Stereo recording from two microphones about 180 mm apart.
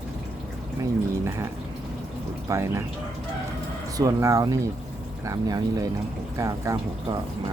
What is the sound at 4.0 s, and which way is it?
Speech, 20° right (ahead or behind).